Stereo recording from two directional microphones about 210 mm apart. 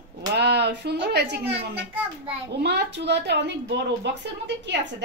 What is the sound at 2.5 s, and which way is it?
Speech, 50° right (ahead or behind).